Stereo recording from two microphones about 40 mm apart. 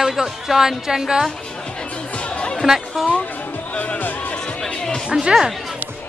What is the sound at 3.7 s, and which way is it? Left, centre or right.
Music, left.